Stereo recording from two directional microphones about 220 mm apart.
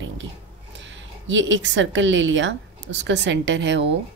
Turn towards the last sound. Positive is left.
turn(degrees=-55)  # may be behind; listen again after turning